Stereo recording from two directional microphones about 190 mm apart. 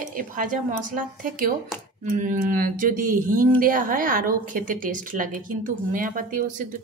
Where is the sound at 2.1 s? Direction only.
45° right (ahead or behind).